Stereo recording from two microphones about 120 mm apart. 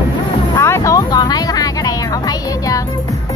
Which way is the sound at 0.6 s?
20° left (ahead or behind).